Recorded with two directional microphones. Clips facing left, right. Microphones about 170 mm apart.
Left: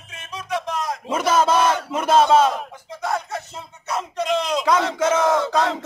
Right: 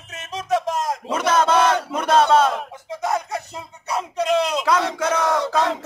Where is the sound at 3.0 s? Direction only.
20° right (ahead or behind).